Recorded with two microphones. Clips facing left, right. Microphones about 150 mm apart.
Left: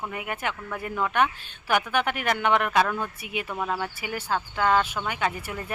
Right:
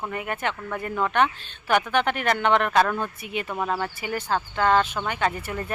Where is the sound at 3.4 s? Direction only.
10° right (ahead or behind).